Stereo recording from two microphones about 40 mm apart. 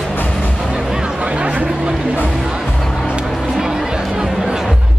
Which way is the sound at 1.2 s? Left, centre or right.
Right.